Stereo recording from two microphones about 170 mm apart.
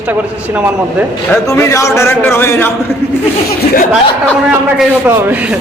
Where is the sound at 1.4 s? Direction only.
15° left (ahead or behind).